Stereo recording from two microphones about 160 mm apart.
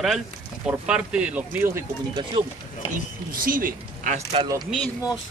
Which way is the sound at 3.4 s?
60° right (ahead or behind).